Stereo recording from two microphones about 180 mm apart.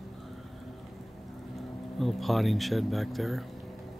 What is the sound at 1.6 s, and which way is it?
Speech, centre (ahead or behind).